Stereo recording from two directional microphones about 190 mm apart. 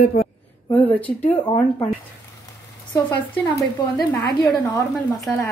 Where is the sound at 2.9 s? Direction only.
20° left (ahead or behind).